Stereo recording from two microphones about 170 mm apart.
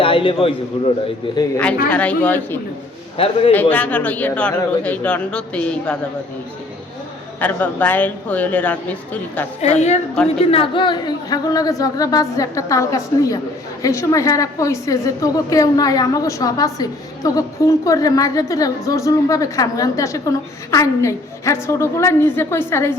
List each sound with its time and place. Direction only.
0.0 s a man's voice: 30° left (ahead or behind)
1.9 s speech: 10° left (ahead or behind)
3.2 s a woman's voice: 35° left (ahead or behind)
3.5 s speech: 10° left (ahead or behind)
7.3 s speech: 10° left (ahead or behind)
9.6 s a woman's voice: 40° left (ahead or behind); by 22.9 s 15° left (ahead or behind)